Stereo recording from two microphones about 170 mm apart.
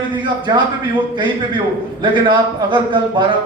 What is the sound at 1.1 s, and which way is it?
A man's voice, 30° right (ahead or behind).